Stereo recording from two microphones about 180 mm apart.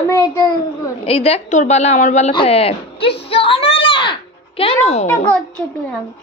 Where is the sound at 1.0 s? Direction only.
35° left (ahead or behind).